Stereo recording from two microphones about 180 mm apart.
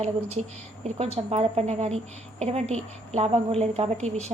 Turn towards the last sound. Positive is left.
turn(degrees=-40)  # may be behind; listen again after turning